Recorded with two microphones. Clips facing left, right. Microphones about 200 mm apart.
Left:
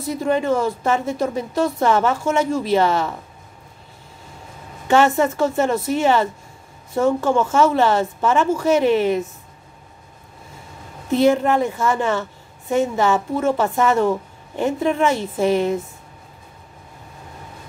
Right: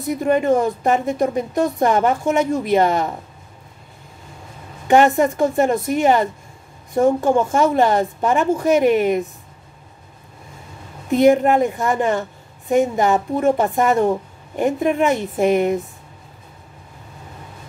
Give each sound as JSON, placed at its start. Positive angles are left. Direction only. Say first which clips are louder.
{"t": 0.4, "sound": "a woman's voice", "louder": "right 3 dB", "side_deg": -15}
{"t": 4.8, "sound": "a woman's voice", "louder": "right 2 dB", "side_deg": -15}
{"t": 11.1, "sound": "a woman's voice", "louder": "right 2 dB", "side_deg": -15}